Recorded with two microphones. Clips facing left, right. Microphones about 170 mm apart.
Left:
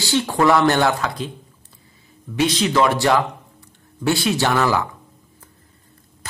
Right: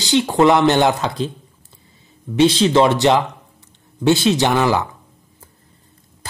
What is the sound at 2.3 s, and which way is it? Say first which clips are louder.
A man's voice: right 5 dB; 30° right (ahead or behind).